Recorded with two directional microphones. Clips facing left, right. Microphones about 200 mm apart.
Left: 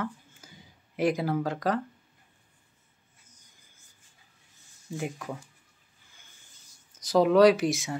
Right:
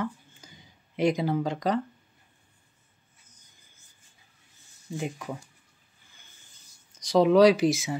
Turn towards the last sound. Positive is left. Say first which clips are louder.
# right 1 dB
turn(degrees=0)  # may be behind; listen again after turning